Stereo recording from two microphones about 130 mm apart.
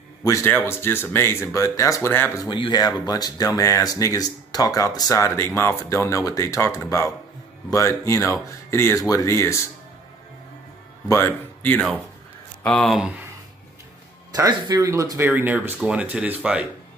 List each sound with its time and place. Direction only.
0.2 s a man's voice: 25° left (ahead or behind)
2.4 s speech: 35° left (ahead or behind)
11.1 s speech: 20° left (ahead or behind)
12.6 s speech: 5° left (ahead or behind)
14.3 s speech: 30° right (ahead or behind); by 16.6 s 10° right (ahead or behind)